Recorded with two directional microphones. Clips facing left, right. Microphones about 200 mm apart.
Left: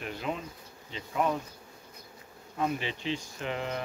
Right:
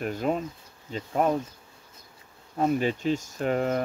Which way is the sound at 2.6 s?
45° right (ahead or behind).